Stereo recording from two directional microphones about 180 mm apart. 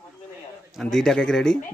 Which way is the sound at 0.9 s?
5° left (ahead or behind).